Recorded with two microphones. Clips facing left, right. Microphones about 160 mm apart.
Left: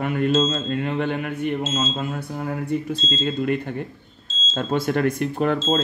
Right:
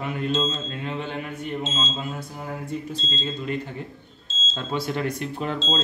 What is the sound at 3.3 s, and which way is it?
Speech, 60° left (ahead or behind).